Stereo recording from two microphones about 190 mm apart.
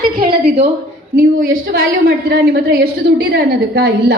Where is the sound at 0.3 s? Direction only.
35° right (ahead or behind).